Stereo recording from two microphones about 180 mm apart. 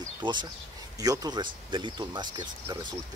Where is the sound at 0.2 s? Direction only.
25° right (ahead or behind).